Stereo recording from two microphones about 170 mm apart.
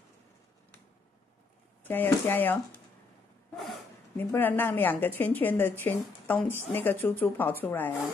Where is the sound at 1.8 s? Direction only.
10° left (ahead or behind).